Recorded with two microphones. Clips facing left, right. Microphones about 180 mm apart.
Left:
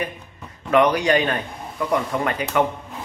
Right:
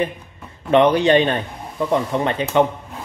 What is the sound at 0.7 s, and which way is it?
A man's voice, 25° right (ahead or behind).